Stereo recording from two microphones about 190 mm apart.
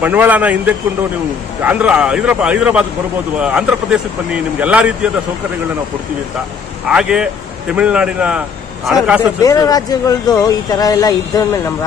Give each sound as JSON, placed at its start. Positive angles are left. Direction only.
{"t": 0.0, "sound": "a man's voice", "side_deg": -10}
{"t": 6.9, "sound": "speech", "side_deg": -5}
{"t": 9.4, "sound": "speech", "side_deg": 20}